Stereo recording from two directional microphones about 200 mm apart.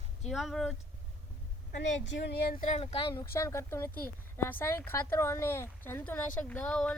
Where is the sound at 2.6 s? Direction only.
35° left (ahead or behind).